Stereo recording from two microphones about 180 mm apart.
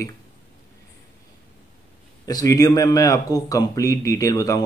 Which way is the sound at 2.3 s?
20° left (ahead or behind).